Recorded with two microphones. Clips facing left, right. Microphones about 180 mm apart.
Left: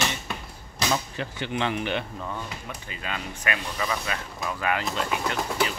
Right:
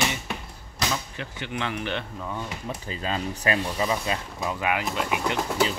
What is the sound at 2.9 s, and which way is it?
Speech, 30° right (ahead or behind).